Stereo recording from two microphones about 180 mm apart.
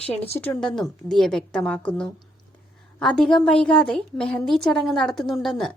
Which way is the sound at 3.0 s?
5° left (ahead or behind).